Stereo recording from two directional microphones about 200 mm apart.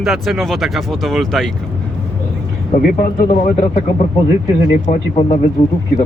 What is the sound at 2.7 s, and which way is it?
Speech, 45° left (ahead or behind).